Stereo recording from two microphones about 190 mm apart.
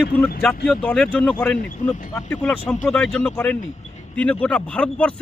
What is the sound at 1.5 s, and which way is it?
Speech, 45° left (ahead or behind).